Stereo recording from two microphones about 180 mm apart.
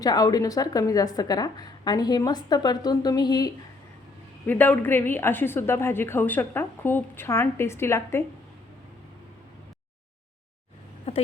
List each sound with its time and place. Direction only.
0.0 s a woman's voice: 20° left (ahead or behind)
4.4 s a woman's voice: 10° left (ahead or behind)